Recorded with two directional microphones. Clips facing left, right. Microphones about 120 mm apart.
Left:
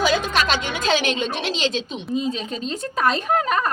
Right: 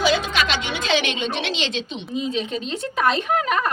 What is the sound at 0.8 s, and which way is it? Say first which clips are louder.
Speech: left 1 dB; 40° left (ahead or behind).